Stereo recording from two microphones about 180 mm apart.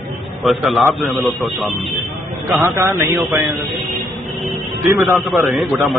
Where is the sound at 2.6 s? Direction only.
20° right (ahead or behind).